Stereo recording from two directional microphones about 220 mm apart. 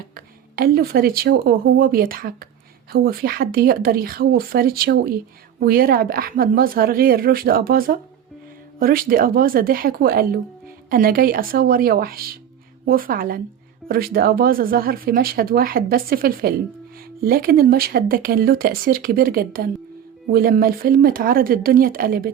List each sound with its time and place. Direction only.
0.1 s speech: 40° right (ahead or behind)